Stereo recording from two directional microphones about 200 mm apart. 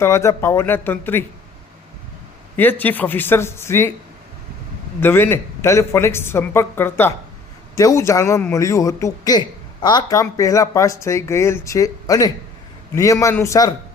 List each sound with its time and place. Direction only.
0.0 s a man's voice: 15° left (ahead or behind)
2.6 s a man's voice: 10° left (ahead or behind)
4.9 s a man's voice: 10° left (ahead or behind)